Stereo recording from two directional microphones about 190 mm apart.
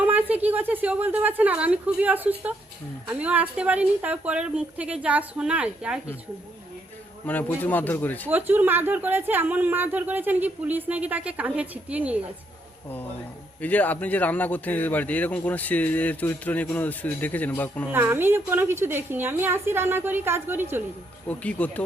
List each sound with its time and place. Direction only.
0.0 s a woman's voice: 10° right (ahead or behind)
7.3 s a man's voice: 10° left (ahead or behind)
8.3 s a woman's voice: 10° right (ahead or behind)
13.6 s a man's voice: 10° left (ahead or behind)
17.9 s a woman's voice: 10° right (ahead or behind)
21.2 s a man's voice: 10° left (ahead or behind)